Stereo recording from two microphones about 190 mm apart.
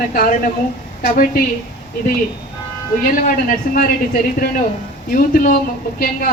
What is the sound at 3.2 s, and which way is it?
Speech, 45° left (ahead or behind).